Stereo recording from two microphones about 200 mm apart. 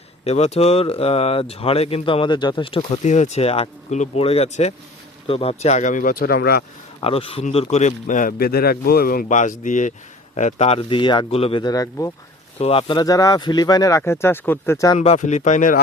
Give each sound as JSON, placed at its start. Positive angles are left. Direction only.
{"t": 0.3, "sound": "speech", "side_deg": 35}
{"t": 7.0, "sound": "speech", "side_deg": 30}
{"t": 12.5, "sound": "speech", "side_deg": 30}
{"t": 14.9, "sound": "speech", "side_deg": 35}